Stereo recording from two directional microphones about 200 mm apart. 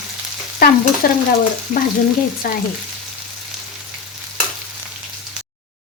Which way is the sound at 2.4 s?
45° left (ahead or behind).